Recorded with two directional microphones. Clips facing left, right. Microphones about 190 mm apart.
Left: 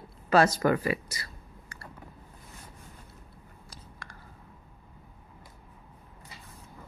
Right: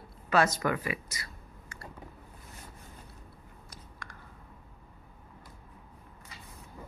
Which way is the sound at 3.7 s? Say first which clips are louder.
Left 1 dB; 30° left (ahead or behind).